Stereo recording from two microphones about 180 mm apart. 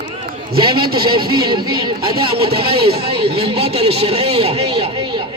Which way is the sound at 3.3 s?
35° right (ahead or behind).